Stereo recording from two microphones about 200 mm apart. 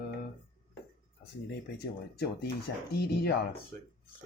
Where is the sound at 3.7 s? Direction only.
45° right (ahead or behind).